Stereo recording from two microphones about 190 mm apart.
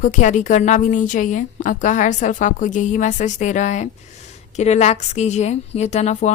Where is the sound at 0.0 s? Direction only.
40° left (ahead or behind).